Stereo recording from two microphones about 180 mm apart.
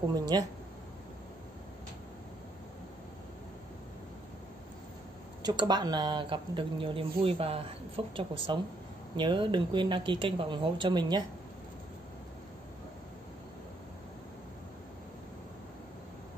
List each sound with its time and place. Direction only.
0.1 s speech: 20° right (ahead or behind)
5.4 s speech: 25° right (ahead or behind)